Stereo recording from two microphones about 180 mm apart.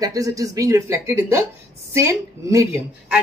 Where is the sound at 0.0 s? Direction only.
20° right (ahead or behind).